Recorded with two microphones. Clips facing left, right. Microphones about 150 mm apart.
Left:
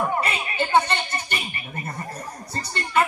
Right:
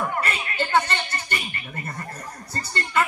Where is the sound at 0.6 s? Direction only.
15° left (ahead or behind).